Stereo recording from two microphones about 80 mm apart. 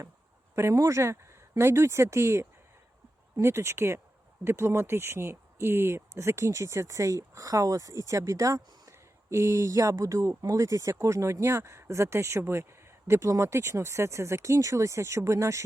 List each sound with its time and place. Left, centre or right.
0.5 s speech: right